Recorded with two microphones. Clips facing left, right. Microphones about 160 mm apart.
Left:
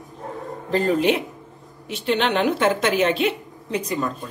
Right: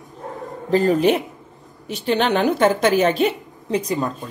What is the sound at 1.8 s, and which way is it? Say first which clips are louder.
A woman's voice: right 2 dB; 40° right (ahead or behind).